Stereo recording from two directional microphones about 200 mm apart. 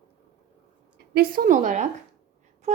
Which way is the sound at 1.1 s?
50° right (ahead or behind).